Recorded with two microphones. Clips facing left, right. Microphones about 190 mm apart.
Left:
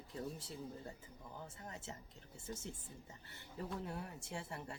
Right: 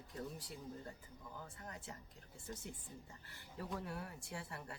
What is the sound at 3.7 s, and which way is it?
Speech, 25° left (ahead or behind).